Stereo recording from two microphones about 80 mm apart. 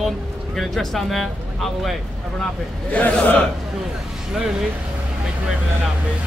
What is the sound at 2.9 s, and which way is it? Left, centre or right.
Speech, centre.